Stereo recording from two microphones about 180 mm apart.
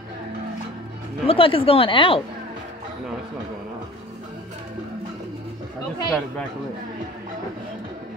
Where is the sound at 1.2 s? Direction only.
30° left (ahead or behind).